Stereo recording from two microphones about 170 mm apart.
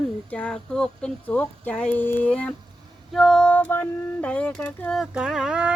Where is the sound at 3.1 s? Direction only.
Centre (ahead or behind).